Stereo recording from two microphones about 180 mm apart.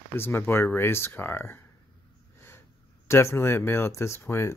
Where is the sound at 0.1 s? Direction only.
10° left (ahead or behind).